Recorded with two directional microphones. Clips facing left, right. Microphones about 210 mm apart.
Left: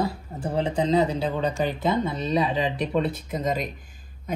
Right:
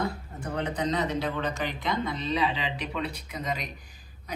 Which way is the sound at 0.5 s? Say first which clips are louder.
Left 7 dB; 30° left (ahead or behind).